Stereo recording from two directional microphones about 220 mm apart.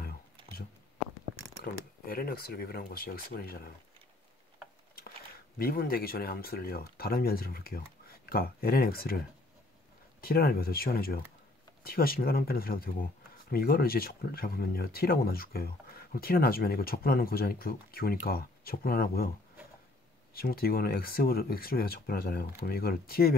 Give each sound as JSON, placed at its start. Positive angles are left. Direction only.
{"t": 1.6, "sound": "speech", "side_deg": 45}
{"t": 5.6, "sound": "speech", "side_deg": 45}
{"t": 10.2, "sound": "speech", "side_deg": 45}
{"t": 20.3, "sound": "speech", "side_deg": 45}